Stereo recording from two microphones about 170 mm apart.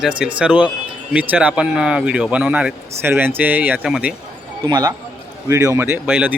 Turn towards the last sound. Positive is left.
turn(degrees=-10)  # may be behind; listen again after turning